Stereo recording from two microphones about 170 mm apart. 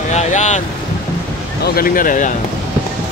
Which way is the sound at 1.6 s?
60° left (ahead or behind).